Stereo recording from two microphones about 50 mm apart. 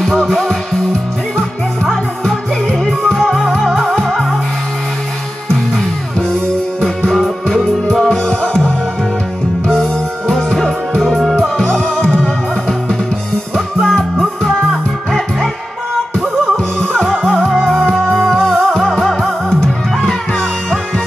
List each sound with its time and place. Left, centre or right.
0.0 s music: centre
2.8 s music: centre
6.8 s music: centre
8.1 s music: centre
13.7 s music: centre
16.8 s music: centre
18.1 s music: centre
18.4 s music: centre